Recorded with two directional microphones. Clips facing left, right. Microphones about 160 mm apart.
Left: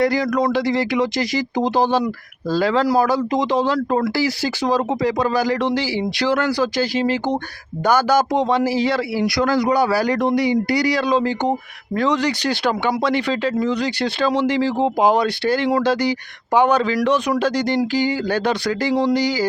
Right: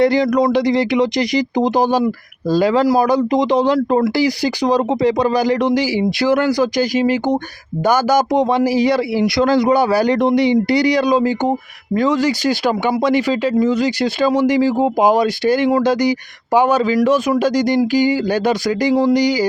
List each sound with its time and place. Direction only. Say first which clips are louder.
0.0 s a man's voice: right 4 dB; 20° right (ahead or behind)